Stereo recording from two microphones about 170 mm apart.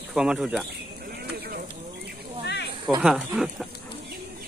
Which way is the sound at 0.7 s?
65° right (ahead or behind).